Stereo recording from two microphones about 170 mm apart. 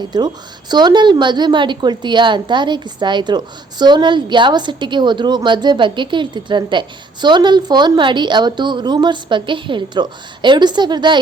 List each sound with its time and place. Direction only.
0.1 s a woman's voice: 25° right (ahead or behind)